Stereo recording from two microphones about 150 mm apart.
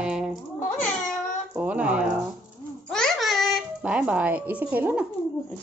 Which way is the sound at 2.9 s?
Centre (ahead or behind).